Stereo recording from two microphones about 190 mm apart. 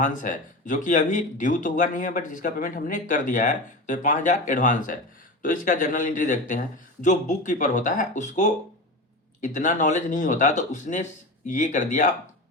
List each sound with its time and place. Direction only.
0.0 s speech: 45° left (ahead or behind)